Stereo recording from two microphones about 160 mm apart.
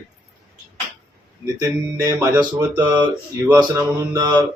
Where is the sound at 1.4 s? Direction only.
20° right (ahead or behind).